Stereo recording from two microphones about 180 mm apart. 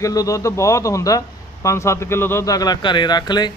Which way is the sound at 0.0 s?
20° left (ahead or behind).